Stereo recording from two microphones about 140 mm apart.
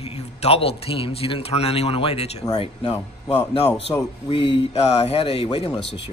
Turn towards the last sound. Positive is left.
turn(degrees=45)  # may be behind; listen again after turning